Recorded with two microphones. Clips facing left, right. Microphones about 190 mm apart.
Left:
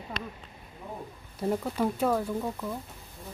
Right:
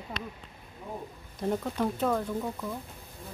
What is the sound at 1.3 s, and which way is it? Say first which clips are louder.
Speech: left 1 dB; 5° left (ahead or behind).